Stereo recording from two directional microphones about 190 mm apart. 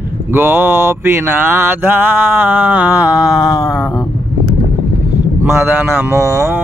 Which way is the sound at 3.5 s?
20° left (ahead or behind).